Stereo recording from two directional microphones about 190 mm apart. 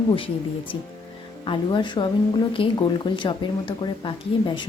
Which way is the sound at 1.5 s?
25° left (ahead or behind).